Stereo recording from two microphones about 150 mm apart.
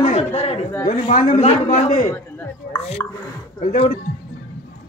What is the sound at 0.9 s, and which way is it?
A woman's voice, 55° left (ahead or behind).